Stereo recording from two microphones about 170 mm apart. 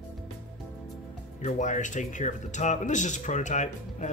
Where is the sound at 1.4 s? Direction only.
45° left (ahead or behind).